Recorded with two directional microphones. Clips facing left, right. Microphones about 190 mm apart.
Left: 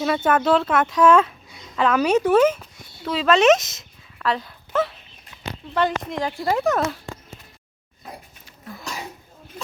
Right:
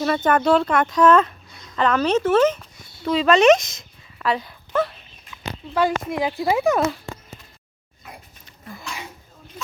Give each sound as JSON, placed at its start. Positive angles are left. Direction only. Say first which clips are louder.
{"t": 0.0, "sound": "a child's voice", "louder": "right 1 dB", "side_deg": 5}
{"t": 8.8, "sound": "throat clearing", "louder": "left 2 dB", "side_deg": 40}